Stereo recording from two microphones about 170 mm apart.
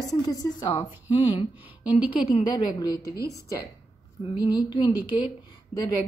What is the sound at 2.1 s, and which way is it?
A woman's voice, 30° left (ahead or behind).